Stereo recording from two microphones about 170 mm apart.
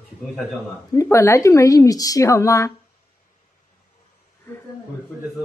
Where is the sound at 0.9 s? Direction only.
15° left (ahead or behind).